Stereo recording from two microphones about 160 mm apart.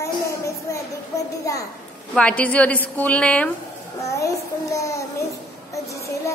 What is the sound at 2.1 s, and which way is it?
A woman's voice, 5° left (ahead or behind).